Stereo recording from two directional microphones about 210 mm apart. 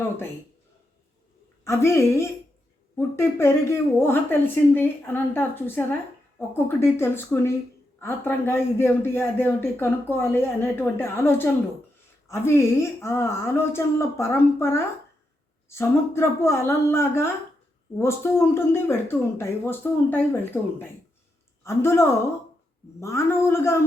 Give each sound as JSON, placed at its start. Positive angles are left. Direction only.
{"t": 1.6, "sound": "speech", "side_deg": 15}